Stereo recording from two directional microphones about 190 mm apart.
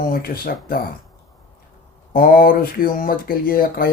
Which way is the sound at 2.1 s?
50° left (ahead or behind).